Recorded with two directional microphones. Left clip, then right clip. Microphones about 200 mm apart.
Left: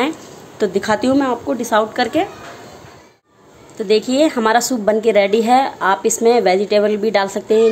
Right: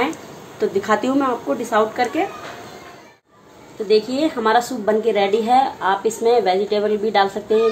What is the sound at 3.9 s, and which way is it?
A woman's voice, 50° left (ahead or behind).